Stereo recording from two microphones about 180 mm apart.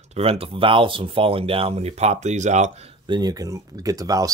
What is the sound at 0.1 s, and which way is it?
Speech, 35° right (ahead or behind).